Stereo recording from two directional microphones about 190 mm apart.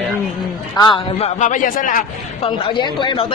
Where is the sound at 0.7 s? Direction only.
25° left (ahead or behind).